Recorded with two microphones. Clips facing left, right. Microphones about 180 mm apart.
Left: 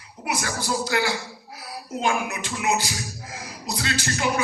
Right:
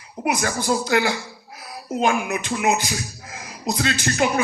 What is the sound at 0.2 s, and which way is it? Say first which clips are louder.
Speech: right 7 dB; 65° right (ahead or behind).